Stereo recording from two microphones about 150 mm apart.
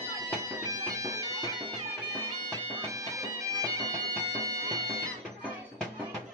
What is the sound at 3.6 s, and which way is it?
Bagpipes, 25° right (ahead or behind).